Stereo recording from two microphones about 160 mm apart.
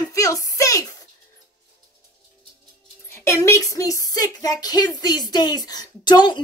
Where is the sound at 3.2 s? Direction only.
20° left (ahead or behind).